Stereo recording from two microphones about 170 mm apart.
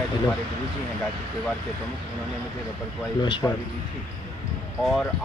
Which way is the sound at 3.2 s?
25° left (ahead or behind).